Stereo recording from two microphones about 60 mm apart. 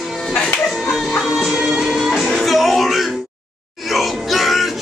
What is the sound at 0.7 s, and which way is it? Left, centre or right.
Music, centre.